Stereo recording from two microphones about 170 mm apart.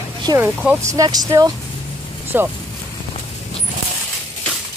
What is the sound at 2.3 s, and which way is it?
Speech, 10° right (ahead or behind).